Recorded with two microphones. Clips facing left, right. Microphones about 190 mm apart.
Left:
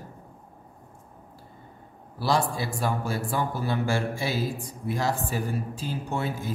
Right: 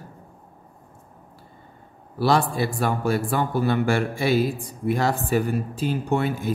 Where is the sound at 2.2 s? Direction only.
65° right (ahead or behind).